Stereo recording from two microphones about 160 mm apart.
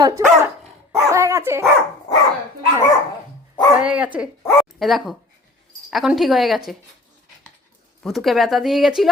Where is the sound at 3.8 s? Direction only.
5° right (ahead or behind).